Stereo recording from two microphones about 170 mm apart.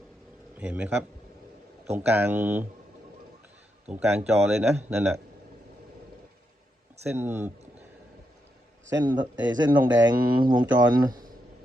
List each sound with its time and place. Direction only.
0.5 s a man's voice: 10° right (ahead or behind)
1.9 s a man's voice: 10° right (ahead or behind)
3.8 s a man's voice: 10° right (ahead or behind)
7.1 s a man's voice: 15° right (ahead or behind)
8.9 s a man's voice: 25° right (ahead or behind)